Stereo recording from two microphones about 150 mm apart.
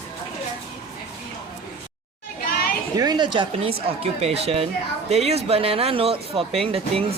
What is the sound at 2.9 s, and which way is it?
Speech, 25° right (ahead or behind).